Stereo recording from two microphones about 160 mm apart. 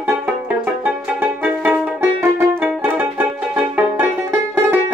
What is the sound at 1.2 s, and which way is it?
Music, 10° right (ahead or behind).